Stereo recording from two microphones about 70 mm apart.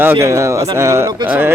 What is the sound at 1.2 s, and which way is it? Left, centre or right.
Speech, right.